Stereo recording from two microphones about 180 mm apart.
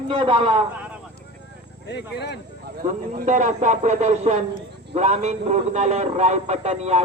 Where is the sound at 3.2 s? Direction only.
40° right (ahead or behind).